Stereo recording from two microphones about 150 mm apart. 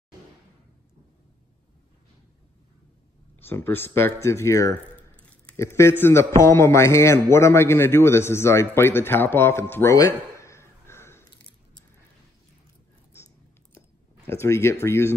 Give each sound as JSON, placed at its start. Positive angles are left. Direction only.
{"t": 3.3, "sound": "a man's voice", "side_deg": 15}
{"t": 14.3, "sound": "a man's voice", "side_deg": 20}